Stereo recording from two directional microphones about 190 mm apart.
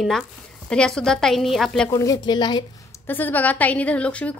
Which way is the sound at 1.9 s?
15° left (ahead or behind).